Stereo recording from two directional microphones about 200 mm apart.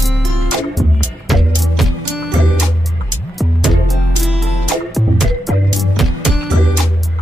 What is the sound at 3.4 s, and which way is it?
Music, centre (ahead or behind).